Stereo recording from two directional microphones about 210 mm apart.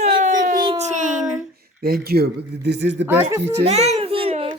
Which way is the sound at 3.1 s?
10° right (ahead or behind).